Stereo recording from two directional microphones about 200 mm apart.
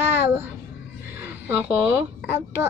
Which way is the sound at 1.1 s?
10° right (ahead or behind).